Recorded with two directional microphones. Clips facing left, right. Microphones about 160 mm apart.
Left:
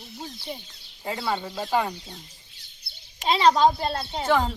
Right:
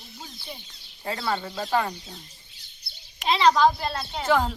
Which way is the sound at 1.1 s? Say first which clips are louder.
Even; 15° left (ahead or behind).